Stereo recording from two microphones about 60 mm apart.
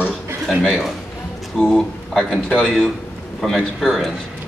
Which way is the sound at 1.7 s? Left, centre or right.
Centre.